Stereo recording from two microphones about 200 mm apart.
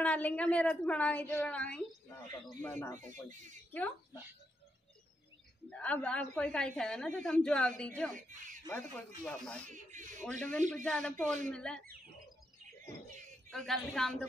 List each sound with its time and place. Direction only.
0.0 s a woman's voice: 5° left (ahead or behind)
3.0 s speech: 40° right (ahead or behind)
5.7 s a woman's voice: 5° left (ahead or behind)
10.7 s a woman's voice: 5° left (ahead or behind)
13.5 s a woman's voice: centre (ahead or behind)